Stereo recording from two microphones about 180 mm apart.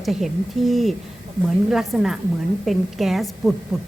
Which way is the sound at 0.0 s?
Centre (ahead or behind).